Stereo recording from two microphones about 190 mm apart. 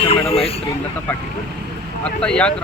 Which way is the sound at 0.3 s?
30° left (ahead or behind).